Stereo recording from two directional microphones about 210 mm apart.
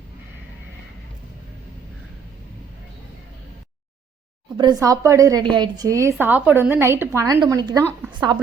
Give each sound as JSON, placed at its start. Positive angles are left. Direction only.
{"t": 4.5, "sound": "a woman's voice", "side_deg": -20}